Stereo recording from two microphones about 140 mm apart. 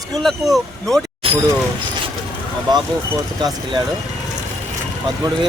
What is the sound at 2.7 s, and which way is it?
Speech, 35° right (ahead or behind).